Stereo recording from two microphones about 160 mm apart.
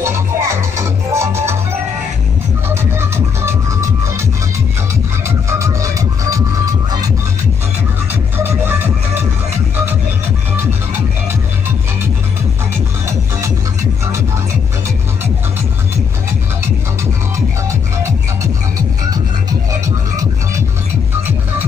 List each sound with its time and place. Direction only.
0.0 s music: 15° right (ahead or behind)
2.7 s music: 15° right (ahead or behind)
5.6 s music: 20° right (ahead or behind)